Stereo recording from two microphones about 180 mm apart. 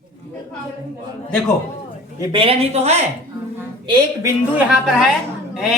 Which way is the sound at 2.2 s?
25° right (ahead or behind).